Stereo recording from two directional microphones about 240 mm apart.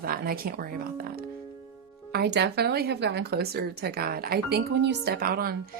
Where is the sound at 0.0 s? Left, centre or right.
Right.